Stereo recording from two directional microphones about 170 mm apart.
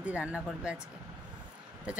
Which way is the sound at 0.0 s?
5° right (ahead or behind).